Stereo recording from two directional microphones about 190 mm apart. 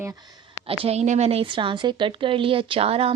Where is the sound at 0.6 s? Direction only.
30° right (ahead or behind).